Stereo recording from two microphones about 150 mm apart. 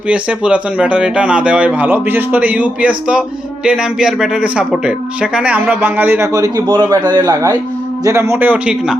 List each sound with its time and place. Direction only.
0.1 s a man's voice: 10° right (ahead or behind)